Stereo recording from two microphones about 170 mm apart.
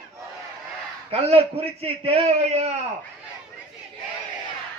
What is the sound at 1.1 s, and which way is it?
A man's voice, 35° right (ahead or behind).